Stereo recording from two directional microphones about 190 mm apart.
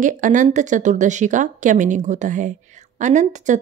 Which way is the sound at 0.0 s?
45° right (ahead or behind).